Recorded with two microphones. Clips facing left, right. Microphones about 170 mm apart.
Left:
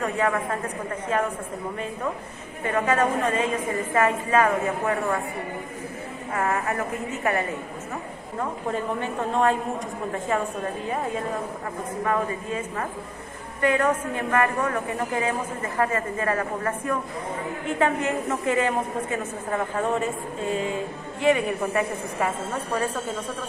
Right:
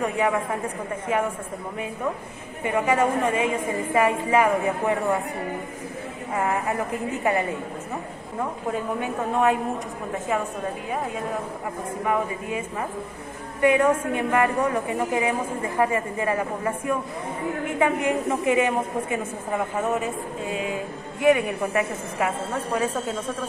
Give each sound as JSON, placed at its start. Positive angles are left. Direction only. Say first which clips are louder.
{"t": 0.0, "sound": "a man's voice", "louder": "right 1 dB", "side_deg": -10}
{"t": 2.6, "sound": "a man's voice", "louder": "right 1 dB", "side_deg": -15}
{"t": 6.3, "sound": "a man's voice", "louder": "right 1 dB", "side_deg": -15}
{"t": 8.7, "sound": "a man's voice", "louder": "right 1 dB", "side_deg": -10}
{"t": 12.0, "sound": "a man's voice", "louder": "even", "side_deg": -15}